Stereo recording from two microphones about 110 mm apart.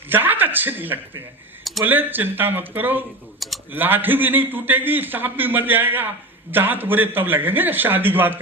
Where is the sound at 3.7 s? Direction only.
15° right (ahead or behind).